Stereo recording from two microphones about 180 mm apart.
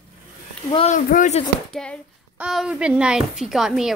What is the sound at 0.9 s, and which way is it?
Speech, 45° left (ahead or behind).